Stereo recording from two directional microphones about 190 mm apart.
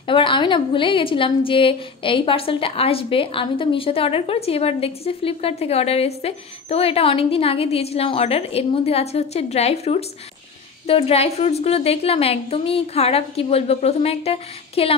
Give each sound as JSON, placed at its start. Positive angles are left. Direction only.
{"t": 0.0, "sound": "a woman's voice", "side_deg": 25}